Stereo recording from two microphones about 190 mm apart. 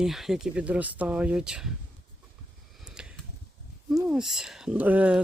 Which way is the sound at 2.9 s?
5° right (ahead or behind).